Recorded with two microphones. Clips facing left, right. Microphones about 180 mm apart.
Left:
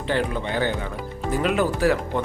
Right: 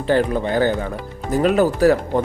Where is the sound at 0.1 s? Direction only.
40° right (ahead or behind).